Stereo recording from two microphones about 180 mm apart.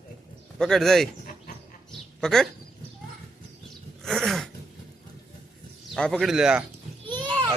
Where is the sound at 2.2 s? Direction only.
5° left (ahead or behind).